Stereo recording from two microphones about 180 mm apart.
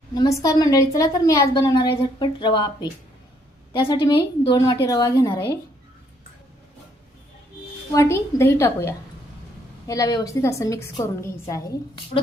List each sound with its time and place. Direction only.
0.1 s a woman's voice: 20° left (ahead or behind)
7.9 s a woman's voice: 15° left (ahead or behind)